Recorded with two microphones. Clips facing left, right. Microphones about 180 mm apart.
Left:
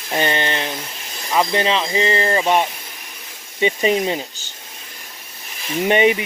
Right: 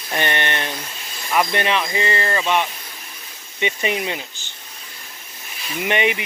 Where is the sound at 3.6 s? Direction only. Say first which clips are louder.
Left 5 dB; 35° left (ahead or behind).